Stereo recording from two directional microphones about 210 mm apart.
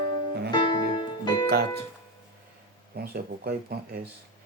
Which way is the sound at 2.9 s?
45° right (ahead or behind).